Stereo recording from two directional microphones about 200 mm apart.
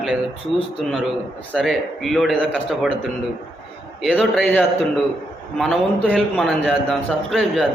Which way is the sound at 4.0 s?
Centre (ahead or behind).